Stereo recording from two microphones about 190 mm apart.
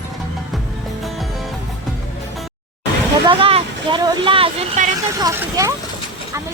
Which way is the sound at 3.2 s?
25° right (ahead or behind).